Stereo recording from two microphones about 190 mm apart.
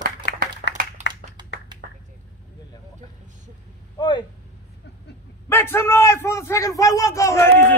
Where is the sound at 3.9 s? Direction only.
25° left (ahead or behind).